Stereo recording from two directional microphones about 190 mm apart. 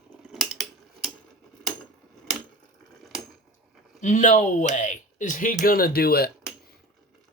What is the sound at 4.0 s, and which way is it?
Speech, 40° left (ahead or behind).